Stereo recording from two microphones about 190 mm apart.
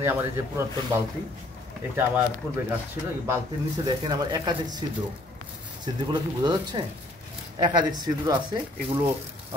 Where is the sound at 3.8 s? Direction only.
25° right (ahead or behind).